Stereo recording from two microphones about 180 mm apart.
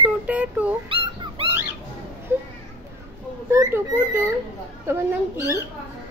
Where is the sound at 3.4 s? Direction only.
15° right (ahead or behind).